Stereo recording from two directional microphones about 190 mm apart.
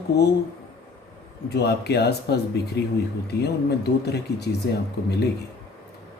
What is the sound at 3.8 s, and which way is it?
Speech, 60° left (ahead or behind).